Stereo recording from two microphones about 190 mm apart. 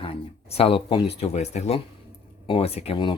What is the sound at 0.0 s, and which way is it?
A man's voice, 30° left (ahead or behind).